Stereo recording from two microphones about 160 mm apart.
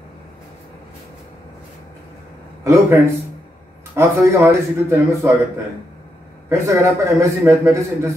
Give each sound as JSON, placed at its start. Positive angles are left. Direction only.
{"t": 2.6, "sound": "a man's voice", "side_deg": -20}
{"t": 6.5, "sound": "a man's voice", "side_deg": -20}